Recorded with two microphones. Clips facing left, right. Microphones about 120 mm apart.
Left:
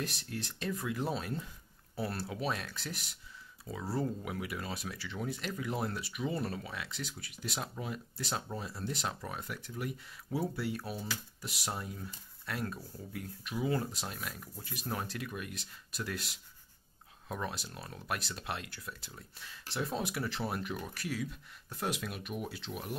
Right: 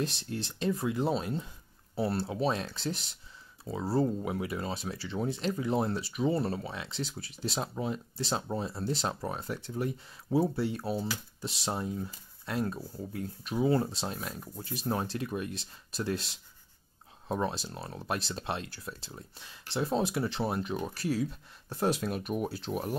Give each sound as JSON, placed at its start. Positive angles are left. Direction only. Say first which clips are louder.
{"t": 0.0, "sound": "speech", "louder": "right 5 dB", "side_deg": -25}